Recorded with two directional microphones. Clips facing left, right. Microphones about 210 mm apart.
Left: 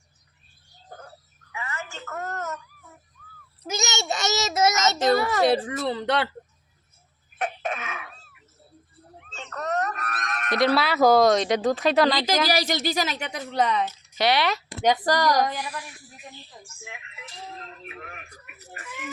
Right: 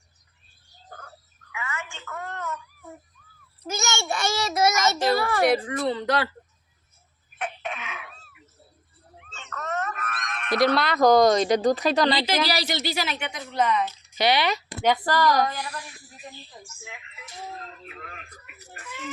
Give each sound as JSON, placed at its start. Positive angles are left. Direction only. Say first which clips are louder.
{"t": 1.5, "sound": "a sound", "louder": "even", "side_deg": 35}
{"t": 3.8, "sound": "a child's voice", "louder": "even", "side_deg": 20}
{"t": 7.3, "sound": "throat clearing", "louder": "left 3 dB", "side_deg": 40}
{"t": 9.3, "sound": "a sound", "louder": "left 3 dB", "side_deg": 35}
{"t": 10.8, "sound": "speech", "louder": "even", "side_deg": 5}
{"t": 12.2, "sound": "a woman's voice", "louder": "left 2 dB", "side_deg": 45}
{"t": 14.2, "sound": "speech", "louder": "even", "side_deg": 0}
{"t": 14.8, "sound": "a woman's voice", "louder": "even", "side_deg": 15}
{"t": 17.8, "sound": "a sound", "louder": "left 1 dB", "side_deg": 20}